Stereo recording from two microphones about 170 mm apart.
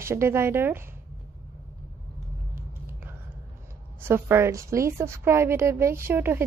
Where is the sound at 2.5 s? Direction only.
10° right (ahead or behind).